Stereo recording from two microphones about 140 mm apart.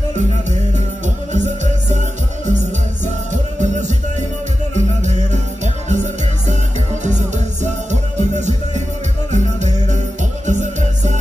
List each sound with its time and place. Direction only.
0.1 s music: 60° right (ahead or behind)
3.5 s music: 60° right (ahead or behind)